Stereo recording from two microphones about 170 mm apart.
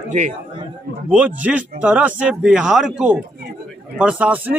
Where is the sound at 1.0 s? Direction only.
10° right (ahead or behind).